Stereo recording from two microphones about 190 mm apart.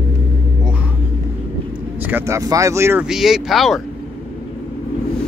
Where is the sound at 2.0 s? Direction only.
10° right (ahead or behind).